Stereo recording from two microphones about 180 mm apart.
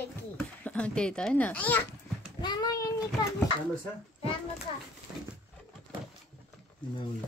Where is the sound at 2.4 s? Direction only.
25° left (ahead or behind).